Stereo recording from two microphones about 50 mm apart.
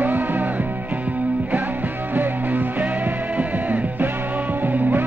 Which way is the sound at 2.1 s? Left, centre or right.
Right.